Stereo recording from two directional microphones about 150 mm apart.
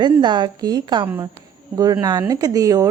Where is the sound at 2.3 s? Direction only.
25° right (ahead or behind).